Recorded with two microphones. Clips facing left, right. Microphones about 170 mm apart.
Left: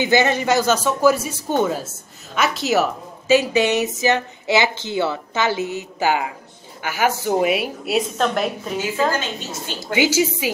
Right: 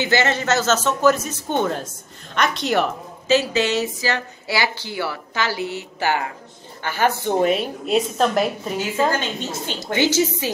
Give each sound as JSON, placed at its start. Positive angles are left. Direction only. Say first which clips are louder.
{"t": 0.0, "sound": "a man's voice", "louder": "left 3 dB", "side_deg": 15}
{"t": 9.9, "sound": "a man's voice", "louder": "left 1 dB", "side_deg": 10}